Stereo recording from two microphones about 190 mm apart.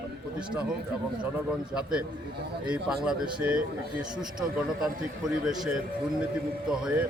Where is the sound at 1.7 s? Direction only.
5° right (ahead or behind).